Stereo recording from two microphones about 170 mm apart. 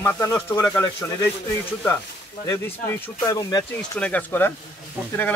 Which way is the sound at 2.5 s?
15° left (ahead or behind).